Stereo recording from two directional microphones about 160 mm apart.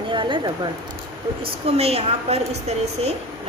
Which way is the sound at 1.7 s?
40° right (ahead or behind).